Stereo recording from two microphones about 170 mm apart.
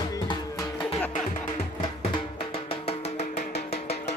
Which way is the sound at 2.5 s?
35° left (ahead or behind).